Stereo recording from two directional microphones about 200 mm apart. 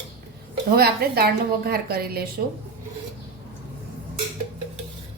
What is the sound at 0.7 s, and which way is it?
A woman's voice, 50° right (ahead or behind).